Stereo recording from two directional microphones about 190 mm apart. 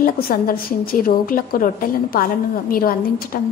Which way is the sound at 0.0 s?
50° left (ahead or behind).